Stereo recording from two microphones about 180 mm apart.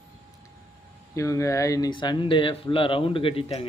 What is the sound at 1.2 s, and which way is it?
Speech, 15° left (ahead or behind).